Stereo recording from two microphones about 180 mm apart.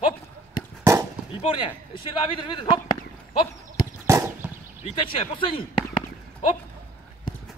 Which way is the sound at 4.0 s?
15° right (ahead or behind).